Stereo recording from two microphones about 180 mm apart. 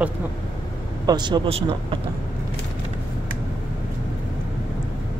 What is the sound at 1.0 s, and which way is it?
Speech, 25° right (ahead or behind).